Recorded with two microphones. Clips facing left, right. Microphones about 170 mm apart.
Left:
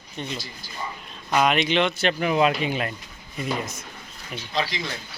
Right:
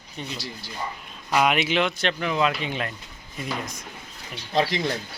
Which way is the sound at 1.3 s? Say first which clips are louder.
Left 1 dB; 5° right (ahead or behind).